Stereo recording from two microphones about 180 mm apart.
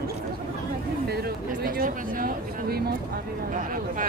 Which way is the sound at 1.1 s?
60° right (ahead or behind).